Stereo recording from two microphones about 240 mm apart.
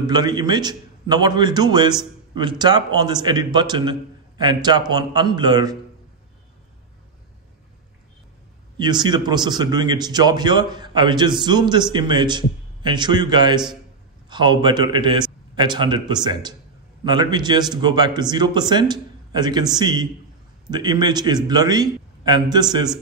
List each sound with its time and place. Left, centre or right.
0.0 s a man's voice: centre
8.7 s a man's voice: centre